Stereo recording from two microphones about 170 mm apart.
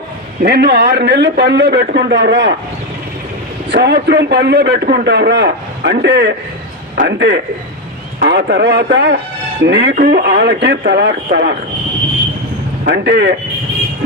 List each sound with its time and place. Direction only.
0.4 s speech: 70° right (ahead or behind)
3.7 s a man's voice: 80° right
8.2 s a man's voice: 75° right (ahead or behind)
12.9 s speech: 75° right (ahead or behind)